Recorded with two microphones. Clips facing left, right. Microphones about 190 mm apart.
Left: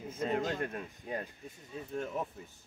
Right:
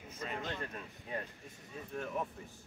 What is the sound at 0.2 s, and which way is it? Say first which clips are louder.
Speech: left 8 dB; 40° left (ahead or behind).